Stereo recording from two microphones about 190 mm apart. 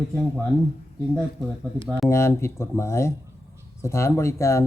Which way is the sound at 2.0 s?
15° left (ahead or behind).